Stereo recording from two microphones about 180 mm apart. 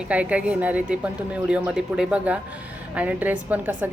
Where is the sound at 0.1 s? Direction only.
5° right (ahead or behind).